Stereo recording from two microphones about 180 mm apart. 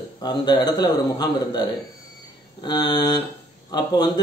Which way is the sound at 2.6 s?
25° left (ahead or behind).